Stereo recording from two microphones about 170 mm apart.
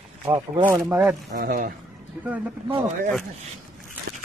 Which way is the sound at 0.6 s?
15° right (ahead or behind).